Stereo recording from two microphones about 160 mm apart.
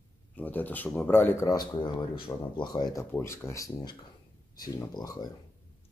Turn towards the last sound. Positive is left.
turn(degrees=25)  # may be behind; listen again after turning